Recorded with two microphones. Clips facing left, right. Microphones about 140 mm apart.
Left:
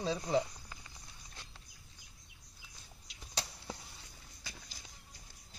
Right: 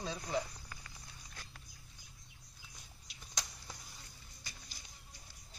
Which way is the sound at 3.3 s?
30° left (ahead or behind).